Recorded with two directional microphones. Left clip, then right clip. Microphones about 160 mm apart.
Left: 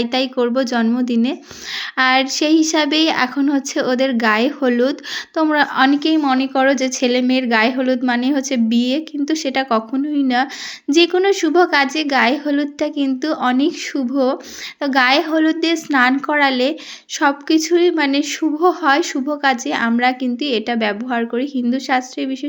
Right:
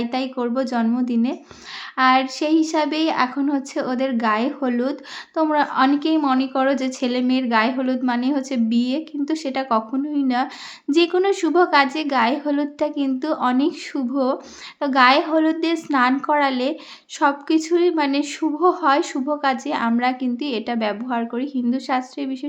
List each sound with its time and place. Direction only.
0.0 s a woman's voice: 15° left (ahead or behind)